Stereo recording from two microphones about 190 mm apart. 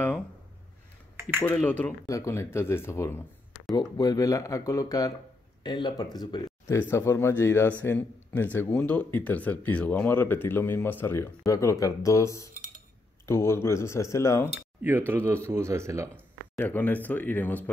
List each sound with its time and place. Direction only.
1.4 s speech: 5° left (ahead or behind)
14.8 s speech: 10° right (ahead or behind)
16.5 s speech: 10° left (ahead or behind)